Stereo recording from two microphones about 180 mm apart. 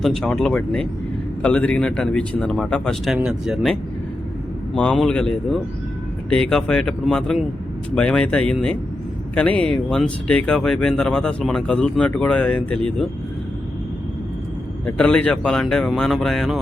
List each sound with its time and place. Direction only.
0.0 s speech: 5° left (ahead or behind)
14.8 s speech: 5° left (ahead or behind)